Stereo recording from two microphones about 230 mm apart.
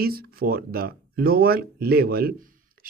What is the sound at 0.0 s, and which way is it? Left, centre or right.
Speech, right.